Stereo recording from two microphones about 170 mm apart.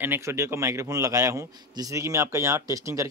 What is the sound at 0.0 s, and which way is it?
Speech, 15° right (ahead or behind).